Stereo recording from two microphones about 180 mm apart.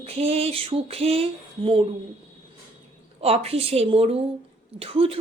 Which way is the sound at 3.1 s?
35° right (ahead or behind).